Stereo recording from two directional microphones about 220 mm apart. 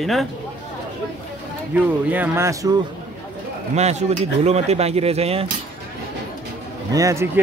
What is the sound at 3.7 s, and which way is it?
Speech, 30° right (ahead or behind).